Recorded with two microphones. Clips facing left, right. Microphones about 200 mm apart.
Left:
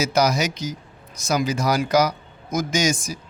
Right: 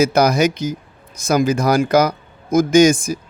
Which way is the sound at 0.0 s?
55° right (ahead or behind).